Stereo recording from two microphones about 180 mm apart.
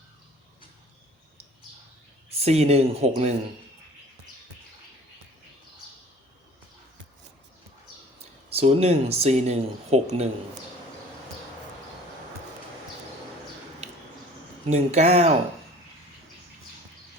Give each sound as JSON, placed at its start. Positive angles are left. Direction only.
{"t": 2.3, "sound": "speech", "side_deg": -35}
{"t": 8.5, "sound": "speech", "side_deg": -35}
{"t": 14.7, "sound": "speech", "side_deg": -40}